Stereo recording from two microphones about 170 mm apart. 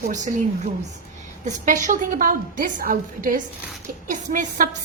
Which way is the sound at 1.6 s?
50° right (ahead or behind).